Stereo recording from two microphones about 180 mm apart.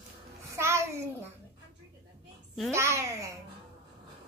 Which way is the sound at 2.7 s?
15° right (ahead or behind).